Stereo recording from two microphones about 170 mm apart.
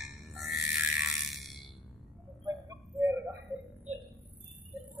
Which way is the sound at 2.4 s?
20° right (ahead or behind).